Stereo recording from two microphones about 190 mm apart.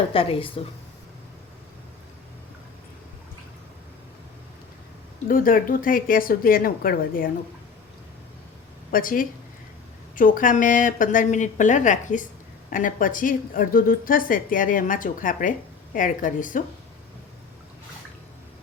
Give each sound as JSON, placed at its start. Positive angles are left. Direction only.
{"t": 0.1, "sound": "speech", "side_deg": 30}
{"t": 5.3, "sound": "a woman's voice", "side_deg": 45}
{"t": 8.9, "sound": "a woman's voice", "side_deg": 45}